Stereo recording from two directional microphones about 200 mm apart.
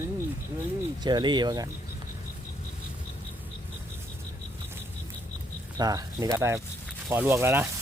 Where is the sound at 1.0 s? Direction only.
20° right (ahead or behind).